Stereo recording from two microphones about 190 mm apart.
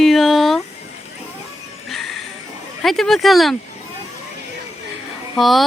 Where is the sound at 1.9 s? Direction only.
Centre (ahead or behind).